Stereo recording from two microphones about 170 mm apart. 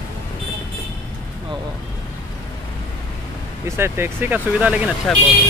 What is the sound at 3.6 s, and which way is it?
Speech, 15° right (ahead or behind).